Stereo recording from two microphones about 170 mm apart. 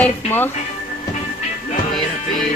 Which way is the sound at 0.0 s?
10° left (ahead or behind).